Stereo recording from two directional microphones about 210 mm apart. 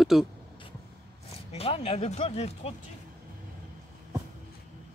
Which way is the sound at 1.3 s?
30° left (ahead or behind).